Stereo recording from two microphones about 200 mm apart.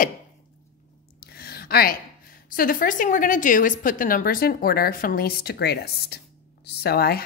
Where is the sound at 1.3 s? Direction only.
50° left (ahead or behind).